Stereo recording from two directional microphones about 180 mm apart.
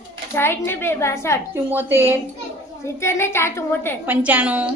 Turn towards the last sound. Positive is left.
turn(degrees=-5)  # may be behind; listen again after turning